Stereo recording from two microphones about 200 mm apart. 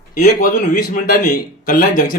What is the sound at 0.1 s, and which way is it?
A man's voice, 40° left (ahead or behind).